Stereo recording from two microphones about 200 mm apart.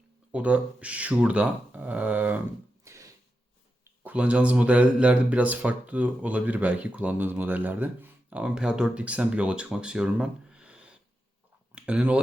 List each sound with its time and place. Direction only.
0.3 s speech: 5° right (ahead or behind)
2.8 s a sound: 15° right (ahead or behind)
4.0 s speech: 5° right (ahead or behind)